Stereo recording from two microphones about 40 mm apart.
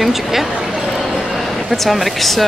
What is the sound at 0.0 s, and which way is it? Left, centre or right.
Speech, centre.